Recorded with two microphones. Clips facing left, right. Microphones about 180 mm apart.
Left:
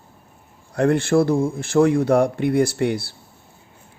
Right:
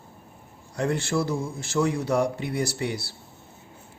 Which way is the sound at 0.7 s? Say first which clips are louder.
Left 9 dB; 60° left (ahead or behind).